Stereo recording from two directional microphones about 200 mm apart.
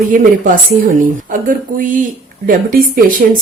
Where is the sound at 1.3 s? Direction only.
40° right (ahead or behind).